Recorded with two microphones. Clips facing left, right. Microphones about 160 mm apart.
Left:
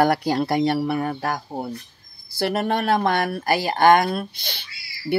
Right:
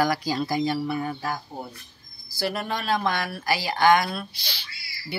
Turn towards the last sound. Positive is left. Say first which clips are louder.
# left 9 dB
turn(degrees=55)  # may be behind; listen again after turning